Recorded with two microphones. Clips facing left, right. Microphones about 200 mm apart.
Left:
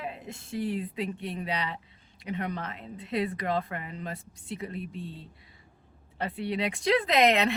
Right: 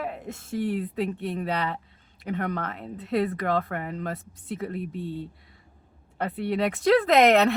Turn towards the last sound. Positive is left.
turn(degrees=-50)  # may be behind; listen again after turning